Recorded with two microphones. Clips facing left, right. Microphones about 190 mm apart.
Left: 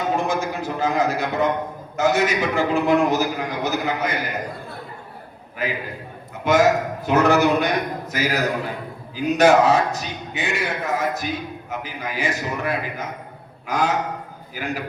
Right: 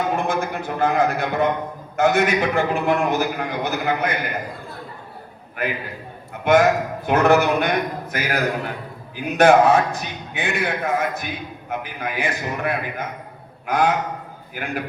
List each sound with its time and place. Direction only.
0.2 s a man's voice: 55° right (ahead or behind)
5.6 s a man's voice: 55° right (ahead or behind)